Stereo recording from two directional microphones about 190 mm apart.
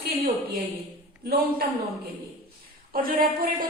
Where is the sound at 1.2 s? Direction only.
55° right (ahead or behind).